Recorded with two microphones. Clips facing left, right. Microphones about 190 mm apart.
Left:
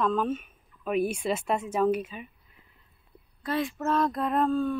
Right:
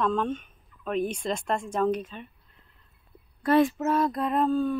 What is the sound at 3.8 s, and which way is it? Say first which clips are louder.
Speech: right 1 dB; 5° right (ahead or behind).